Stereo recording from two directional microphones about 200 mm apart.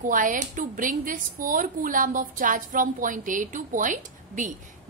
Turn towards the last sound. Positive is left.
turn(degrees=-40)  # may be behind; listen again after turning